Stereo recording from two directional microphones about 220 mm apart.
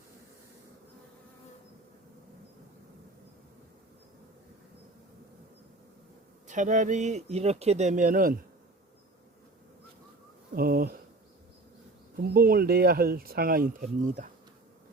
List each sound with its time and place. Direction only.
6.5 s speech: 35° right (ahead or behind)
10.5 s a sound: 40° right (ahead or behind)
12.1 s speech: 40° right (ahead or behind)